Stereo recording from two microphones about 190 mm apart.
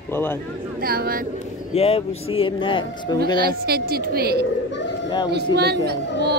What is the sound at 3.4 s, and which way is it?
Speech, 55° right (ahead or behind).